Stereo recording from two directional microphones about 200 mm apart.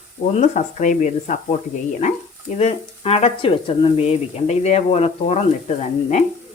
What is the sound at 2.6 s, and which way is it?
A woman's voice, 30° left (ahead or behind).